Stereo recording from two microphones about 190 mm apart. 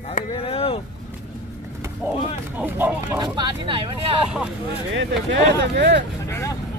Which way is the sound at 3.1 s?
20° right (ahead or behind).